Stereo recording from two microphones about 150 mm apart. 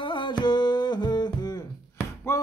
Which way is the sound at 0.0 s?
30° left (ahead or behind).